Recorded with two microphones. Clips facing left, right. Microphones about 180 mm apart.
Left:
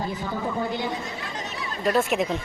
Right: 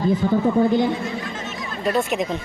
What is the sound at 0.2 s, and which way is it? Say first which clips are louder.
Speech: right 11 dB; 50° right (ahead or behind).